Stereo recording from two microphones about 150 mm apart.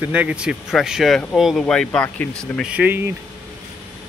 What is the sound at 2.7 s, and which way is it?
Speech, 10° right (ahead or behind).